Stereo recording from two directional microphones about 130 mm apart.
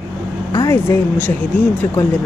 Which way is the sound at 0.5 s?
20° left (ahead or behind).